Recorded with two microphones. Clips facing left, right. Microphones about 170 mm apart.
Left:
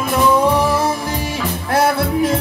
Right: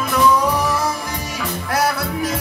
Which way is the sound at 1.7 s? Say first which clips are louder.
Left 5 dB; 25° left (ahead or behind).